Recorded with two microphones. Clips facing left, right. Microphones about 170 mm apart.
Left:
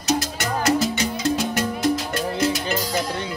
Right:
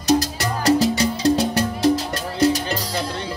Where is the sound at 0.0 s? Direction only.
35° right (ahead or behind).